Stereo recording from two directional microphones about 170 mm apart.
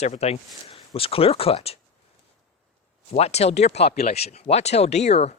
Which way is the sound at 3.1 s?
40° left (ahead or behind).